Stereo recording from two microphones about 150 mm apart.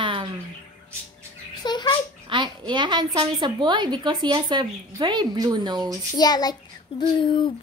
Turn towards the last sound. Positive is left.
turn(degrees=30)  # may be behind; listen again after turning